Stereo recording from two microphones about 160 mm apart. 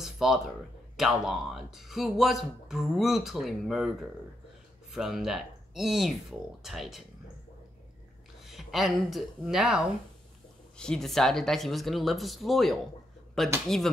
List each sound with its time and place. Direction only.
0.0 s a sound: centre (ahead or behind)
0.9 s speech: centre (ahead or behind)
4.9 s speech: centre (ahead or behind)
8.5 s speech: centre (ahead or behind)